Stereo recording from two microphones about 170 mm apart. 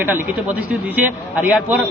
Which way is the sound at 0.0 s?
10° right (ahead or behind).